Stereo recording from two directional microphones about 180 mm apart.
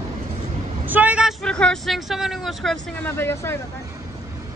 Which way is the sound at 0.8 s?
10° right (ahead or behind).